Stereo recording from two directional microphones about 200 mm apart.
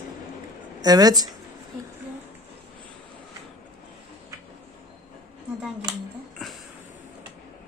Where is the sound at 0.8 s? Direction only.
20° right (ahead or behind).